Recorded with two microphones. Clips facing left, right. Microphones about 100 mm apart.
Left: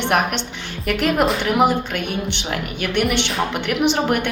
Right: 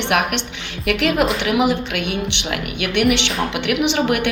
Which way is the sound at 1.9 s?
65° right (ahead or behind).